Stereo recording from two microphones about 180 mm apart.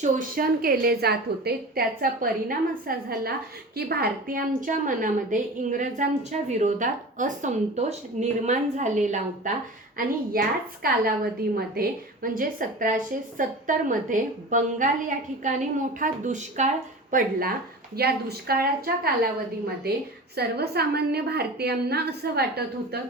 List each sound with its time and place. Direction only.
0.0 s a woman's voice: 55° right (ahead or behind)
10.3 s a woman's voice: 55° right (ahead or behind)
17.9 s a woman's voice: 60° right (ahead or behind)